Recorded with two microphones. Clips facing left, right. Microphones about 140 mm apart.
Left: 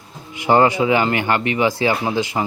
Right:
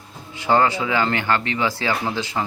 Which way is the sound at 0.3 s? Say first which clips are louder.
Left 4 dB; 15° left (ahead or behind).